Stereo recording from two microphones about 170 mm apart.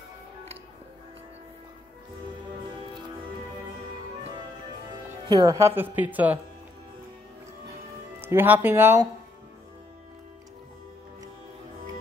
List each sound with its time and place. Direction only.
5.3 s speech: 20° right (ahead or behind)
5.8 s speech: 10° right (ahead or behind)
8.2 s speech: 10° right (ahead or behind)